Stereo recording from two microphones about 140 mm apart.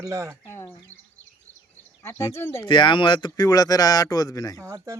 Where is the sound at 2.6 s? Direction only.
35° left (ahead or behind).